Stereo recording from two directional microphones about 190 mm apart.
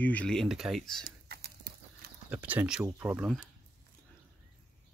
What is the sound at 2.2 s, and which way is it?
Speech, 10° right (ahead or behind).